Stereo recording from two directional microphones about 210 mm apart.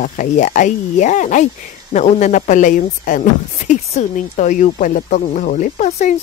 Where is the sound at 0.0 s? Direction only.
35° left (ahead or behind).